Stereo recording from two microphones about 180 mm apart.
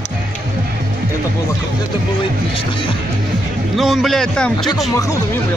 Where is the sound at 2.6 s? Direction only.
30° left (ahead or behind).